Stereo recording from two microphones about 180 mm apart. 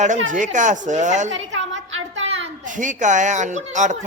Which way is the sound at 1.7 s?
90° right.